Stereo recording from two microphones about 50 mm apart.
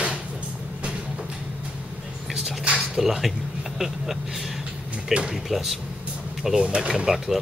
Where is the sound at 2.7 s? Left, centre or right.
Centre.